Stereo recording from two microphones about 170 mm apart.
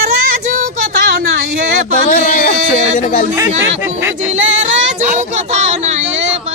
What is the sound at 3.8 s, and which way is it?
Speech, 15° right (ahead or behind).